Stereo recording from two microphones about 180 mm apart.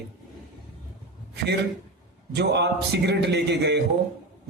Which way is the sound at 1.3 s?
70° right (ahead or behind).